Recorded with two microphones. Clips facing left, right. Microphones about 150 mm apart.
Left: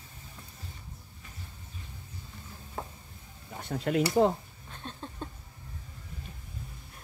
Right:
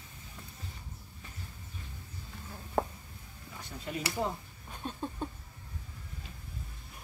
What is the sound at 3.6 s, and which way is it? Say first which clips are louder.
Speech: left 11 dB; 70° left (ahead or behind).